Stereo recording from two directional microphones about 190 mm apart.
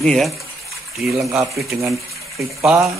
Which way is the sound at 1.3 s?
15° right (ahead or behind).